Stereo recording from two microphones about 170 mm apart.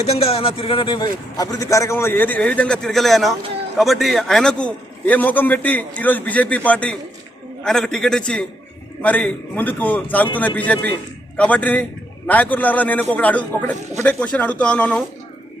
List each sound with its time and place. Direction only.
0.0 s a man's voice: 35° left (ahead or behind); by 15.0 s 5° left (ahead or behind)